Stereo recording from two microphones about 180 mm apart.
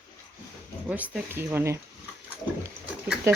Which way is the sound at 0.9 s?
5° right (ahead or behind).